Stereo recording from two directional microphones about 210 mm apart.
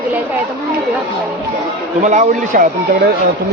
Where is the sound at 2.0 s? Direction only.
35° right (ahead or behind).